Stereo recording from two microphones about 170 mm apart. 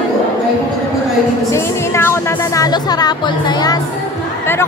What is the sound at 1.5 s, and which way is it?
Music, 15° left (ahead or behind).